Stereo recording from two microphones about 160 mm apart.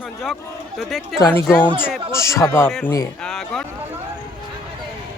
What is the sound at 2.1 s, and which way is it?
Speech, 15° left (ahead or behind).